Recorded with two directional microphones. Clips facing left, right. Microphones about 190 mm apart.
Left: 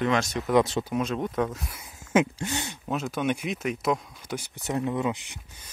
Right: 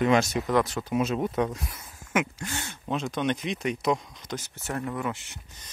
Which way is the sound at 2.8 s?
5° left (ahead or behind).